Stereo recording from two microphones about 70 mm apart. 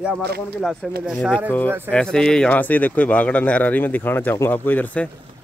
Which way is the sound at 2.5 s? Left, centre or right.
Left.